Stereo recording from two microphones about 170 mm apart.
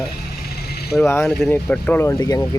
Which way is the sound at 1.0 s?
15° left (ahead or behind).